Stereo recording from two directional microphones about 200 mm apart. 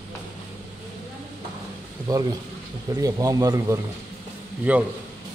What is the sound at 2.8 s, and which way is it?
A man's voice, 15° right (ahead or behind).